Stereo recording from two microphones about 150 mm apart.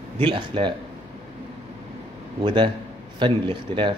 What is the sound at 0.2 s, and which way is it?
Speech, 35° right (ahead or behind).